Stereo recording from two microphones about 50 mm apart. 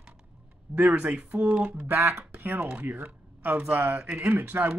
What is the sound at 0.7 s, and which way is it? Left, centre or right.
Speech, right.